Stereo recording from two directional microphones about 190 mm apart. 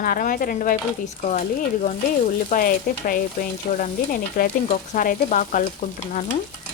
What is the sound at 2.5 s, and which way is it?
Stir, 50° left (ahead or behind).